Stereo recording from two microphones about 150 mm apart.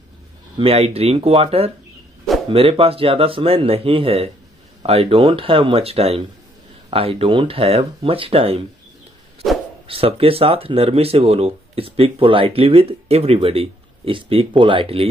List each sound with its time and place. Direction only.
0.6 s speech: 40° right (ahead or behind)
9.8 s speech: 40° right (ahead or behind)